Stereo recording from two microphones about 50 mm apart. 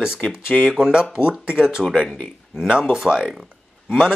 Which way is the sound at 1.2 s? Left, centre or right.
Centre.